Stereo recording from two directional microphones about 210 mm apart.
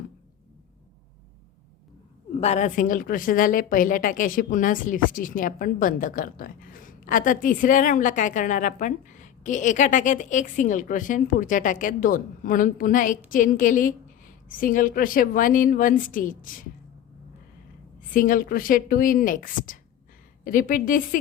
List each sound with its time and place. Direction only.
2.3 s a woman's voice: 30° left (ahead or behind)
18.1 s a woman's voice: 40° left (ahead or behind)